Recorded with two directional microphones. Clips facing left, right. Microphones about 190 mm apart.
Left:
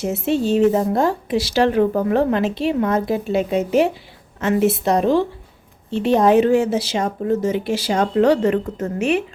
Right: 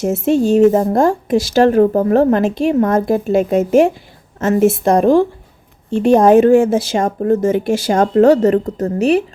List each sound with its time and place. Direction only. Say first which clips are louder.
0.0 s a woman's voice: right 5 dB; 45° right (ahead or behind)